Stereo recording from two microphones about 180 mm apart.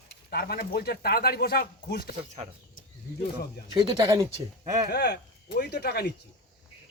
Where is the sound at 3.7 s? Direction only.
20° right (ahead or behind).